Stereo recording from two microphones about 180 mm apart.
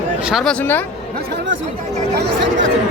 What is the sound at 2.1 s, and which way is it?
Speech, 75° right (ahead or behind).